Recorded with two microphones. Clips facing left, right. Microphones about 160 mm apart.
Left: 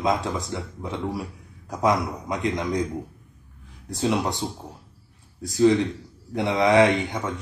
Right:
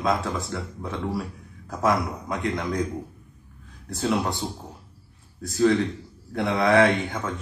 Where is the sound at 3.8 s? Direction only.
15° left (ahead or behind).